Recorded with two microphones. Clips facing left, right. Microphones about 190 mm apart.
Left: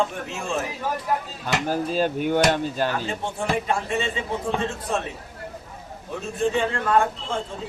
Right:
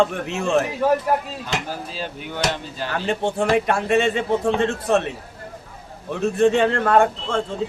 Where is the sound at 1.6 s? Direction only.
50° left (ahead or behind).